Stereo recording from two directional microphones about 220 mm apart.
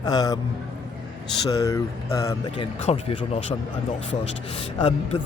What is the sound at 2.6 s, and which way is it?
Speech, 25° left (ahead or behind).